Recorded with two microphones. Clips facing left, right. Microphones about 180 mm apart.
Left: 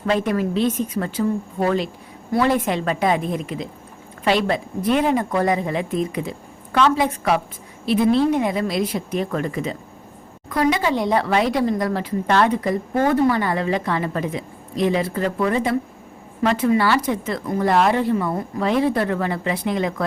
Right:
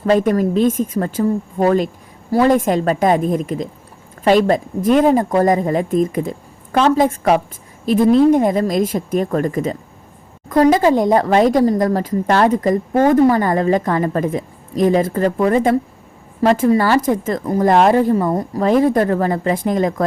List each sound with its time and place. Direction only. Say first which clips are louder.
0.0 s a woman's voice: right 6 dB; 45° right (ahead or behind)